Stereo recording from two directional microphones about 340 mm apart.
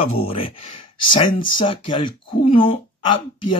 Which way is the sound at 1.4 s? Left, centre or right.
Centre.